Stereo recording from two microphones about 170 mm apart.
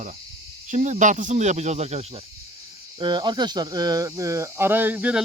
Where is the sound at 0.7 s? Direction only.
45° right (ahead or behind).